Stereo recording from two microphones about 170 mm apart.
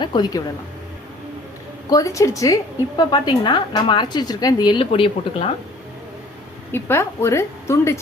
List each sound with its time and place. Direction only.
0.0 s a woman's voice: 25° left (ahead or behind)
1.9 s a woman's voice: 20° left (ahead or behind)
6.7 s a woman's voice: 15° left (ahead or behind)